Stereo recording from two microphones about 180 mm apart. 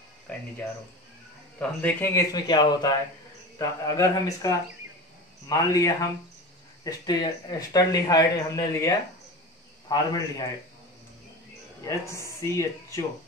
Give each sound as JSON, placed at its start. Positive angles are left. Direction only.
{"t": 1.8, "sound": "speech", "side_deg": 15}
{"t": 11.8, "sound": "speech", "side_deg": 15}